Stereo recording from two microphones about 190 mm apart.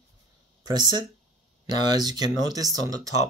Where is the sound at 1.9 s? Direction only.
20° right (ahead or behind).